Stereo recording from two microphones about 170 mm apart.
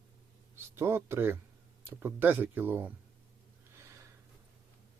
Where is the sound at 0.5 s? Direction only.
15° right (ahead or behind).